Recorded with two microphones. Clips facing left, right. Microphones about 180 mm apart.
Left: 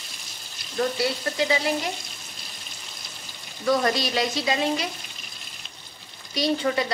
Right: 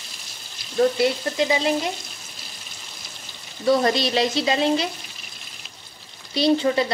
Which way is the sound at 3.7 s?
30° right (ahead or behind).